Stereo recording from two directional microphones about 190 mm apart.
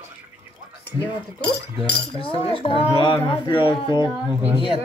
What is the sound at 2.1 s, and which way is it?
Speech, 30° left (ahead or behind).